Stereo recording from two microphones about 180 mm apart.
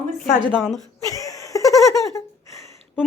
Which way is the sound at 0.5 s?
Centre (ahead or behind).